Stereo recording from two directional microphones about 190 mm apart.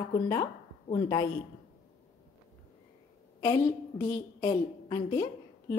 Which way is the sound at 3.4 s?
20° left (ahead or behind).